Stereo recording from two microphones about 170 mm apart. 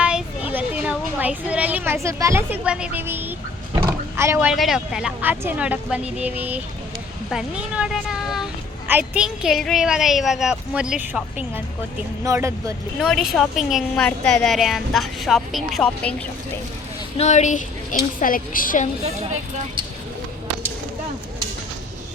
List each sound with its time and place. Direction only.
0.0 s a sound: 5° right (ahead or behind)
2.0 s speech: 15° right (ahead or behind)
3.8 s roaring cats: 15° right (ahead or behind)
4.5 s a woman's voice: centre (ahead or behind); by 12.7 s 15° right (ahead or behind)
13.0 s a woman's voice: centre (ahead or behind)
17.2 s a woman's voice: 40° left (ahead or behind)
19.0 s speech: 35° right (ahead or behind)